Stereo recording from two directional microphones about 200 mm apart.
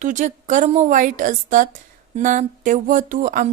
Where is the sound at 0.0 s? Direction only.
40° right (ahead or behind).